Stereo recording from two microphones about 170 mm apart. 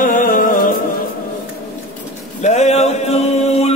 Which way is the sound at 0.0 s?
50° left (ahead or behind).